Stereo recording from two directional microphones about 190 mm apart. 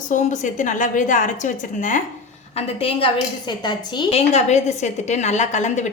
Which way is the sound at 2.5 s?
30° left (ahead or behind).